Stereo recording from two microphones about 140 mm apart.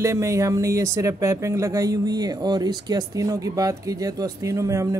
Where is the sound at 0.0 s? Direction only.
20° right (ahead or behind).